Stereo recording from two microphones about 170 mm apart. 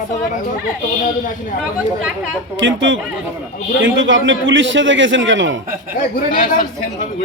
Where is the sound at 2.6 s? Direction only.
90° right.